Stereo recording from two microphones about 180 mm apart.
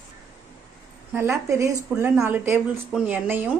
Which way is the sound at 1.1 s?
15° right (ahead or behind).